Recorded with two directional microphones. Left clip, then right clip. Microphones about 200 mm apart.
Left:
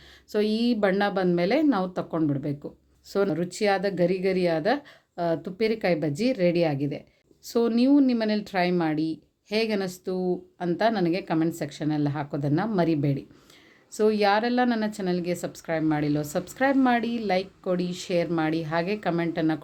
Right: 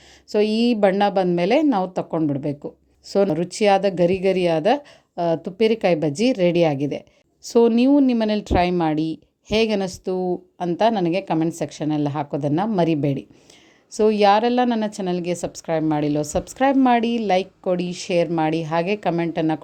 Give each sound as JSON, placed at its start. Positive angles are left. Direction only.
{"t": 0.3, "sound": "speech", "side_deg": -30}